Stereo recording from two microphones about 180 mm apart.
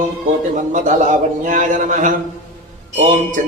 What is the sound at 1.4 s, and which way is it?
A man's voice, 45° right (ahead or behind).